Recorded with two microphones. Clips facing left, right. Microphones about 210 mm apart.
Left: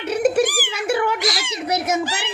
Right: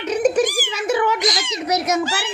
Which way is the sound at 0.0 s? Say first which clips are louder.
Even; 10° left (ahead or behind).